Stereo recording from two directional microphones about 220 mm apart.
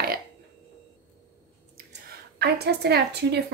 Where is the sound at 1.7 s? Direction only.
45° right (ahead or behind).